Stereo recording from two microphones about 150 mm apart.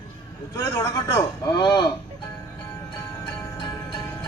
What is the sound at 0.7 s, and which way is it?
A man's voice, 30° left (ahead or behind).